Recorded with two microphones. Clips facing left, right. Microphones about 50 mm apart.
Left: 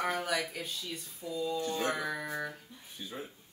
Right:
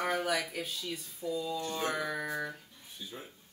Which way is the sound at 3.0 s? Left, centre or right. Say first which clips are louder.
Left 2 dB; left.